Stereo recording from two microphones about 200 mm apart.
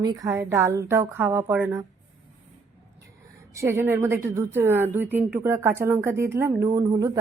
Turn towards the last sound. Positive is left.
turn(degrees=-20)  # may be behind; listen again after turning